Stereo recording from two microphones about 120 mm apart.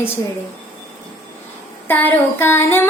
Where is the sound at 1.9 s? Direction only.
15° left (ahead or behind).